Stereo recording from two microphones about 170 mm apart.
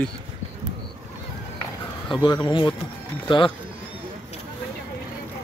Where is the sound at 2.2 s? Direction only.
25° left (ahead or behind).